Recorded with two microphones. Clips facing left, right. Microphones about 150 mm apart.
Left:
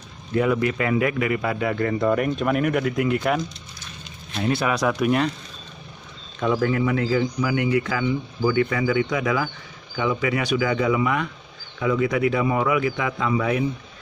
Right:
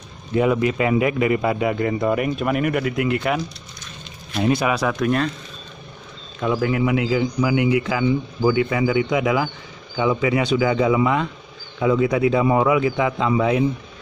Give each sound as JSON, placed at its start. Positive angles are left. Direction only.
{"t": 0.3, "sound": "a man's voice", "side_deg": -20}
{"t": 4.4, "sound": "a man's voice", "side_deg": -15}
{"t": 4.9, "sound": "speech", "side_deg": 15}
{"t": 6.4, "sound": "a man's voice", "side_deg": -5}